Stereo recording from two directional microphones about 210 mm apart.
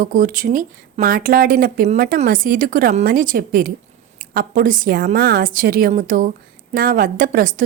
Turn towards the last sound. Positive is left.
turn(degrees=-40)  # may be behind; listen again after turning